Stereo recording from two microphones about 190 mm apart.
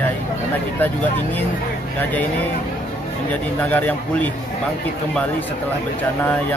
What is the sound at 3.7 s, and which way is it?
Speech, 10° left (ahead or behind).